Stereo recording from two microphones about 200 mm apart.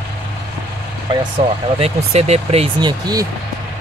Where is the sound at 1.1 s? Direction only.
25° right (ahead or behind).